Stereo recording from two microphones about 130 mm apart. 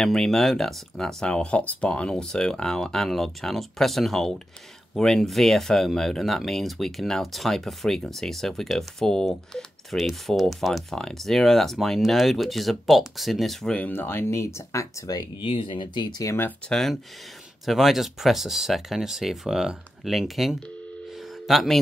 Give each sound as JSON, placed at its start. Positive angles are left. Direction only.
{"t": 0.0, "sound": "speech", "side_deg": 5}
{"t": 15.4, "sound": "speech", "side_deg": 40}